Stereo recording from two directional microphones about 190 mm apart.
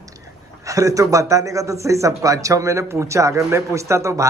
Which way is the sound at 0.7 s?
15° right (ahead or behind).